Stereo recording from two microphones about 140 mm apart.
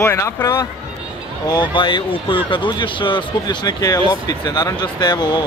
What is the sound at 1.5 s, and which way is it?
Speech, 35° left (ahead or behind).